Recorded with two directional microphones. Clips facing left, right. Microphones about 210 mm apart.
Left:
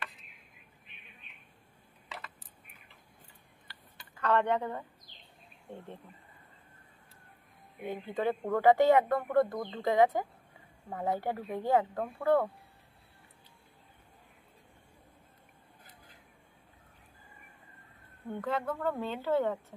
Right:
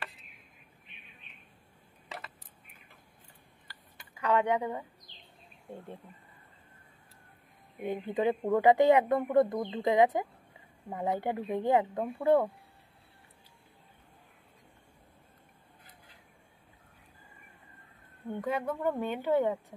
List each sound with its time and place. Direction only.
4.1 s speech: 10° right (ahead or behind)
8.1 s speech: 15° right (ahead or behind)
18.4 s speech: 15° right (ahead or behind)